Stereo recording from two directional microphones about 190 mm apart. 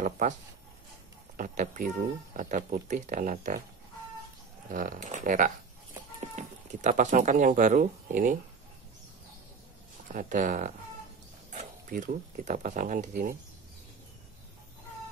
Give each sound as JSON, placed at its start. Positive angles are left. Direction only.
{"t": 1.3, "sound": "speech", "side_deg": -40}
{"t": 4.6, "sound": "speech", "side_deg": -45}
{"t": 10.1, "sound": "speech", "side_deg": -45}